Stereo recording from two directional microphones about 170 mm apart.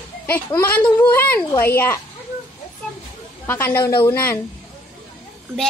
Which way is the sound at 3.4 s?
15° left (ahead or behind).